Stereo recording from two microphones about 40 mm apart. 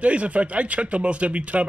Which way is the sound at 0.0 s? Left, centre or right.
Right.